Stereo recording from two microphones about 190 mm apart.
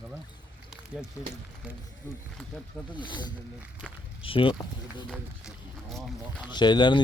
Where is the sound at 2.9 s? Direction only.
25° left (ahead or behind).